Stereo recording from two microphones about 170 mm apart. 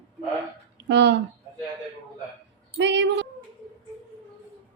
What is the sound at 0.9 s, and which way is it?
Speech, 90° right.